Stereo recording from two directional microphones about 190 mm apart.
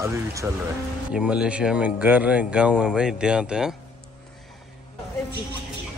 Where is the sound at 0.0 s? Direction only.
15° right (ahead or behind).